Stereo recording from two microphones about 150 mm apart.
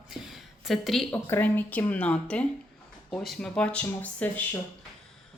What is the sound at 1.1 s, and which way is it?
Speech, 10° left (ahead or behind).